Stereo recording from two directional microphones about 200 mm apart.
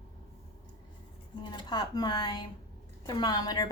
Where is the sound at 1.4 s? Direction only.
20° left (ahead or behind).